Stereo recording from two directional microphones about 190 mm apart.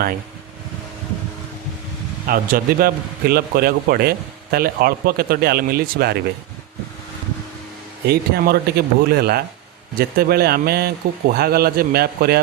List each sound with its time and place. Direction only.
2.2 s a man's voice: 50° right (ahead or behind)
8.0 s a man's voice: 55° right (ahead or behind)